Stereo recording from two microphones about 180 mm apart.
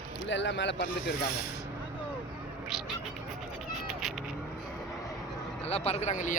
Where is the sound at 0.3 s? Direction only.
85° left.